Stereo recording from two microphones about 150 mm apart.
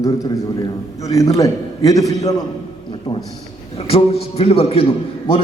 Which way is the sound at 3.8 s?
40° left (ahead or behind).